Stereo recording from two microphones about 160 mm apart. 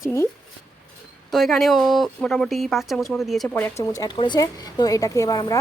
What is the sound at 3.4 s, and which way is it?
Speech, 10° left (ahead or behind).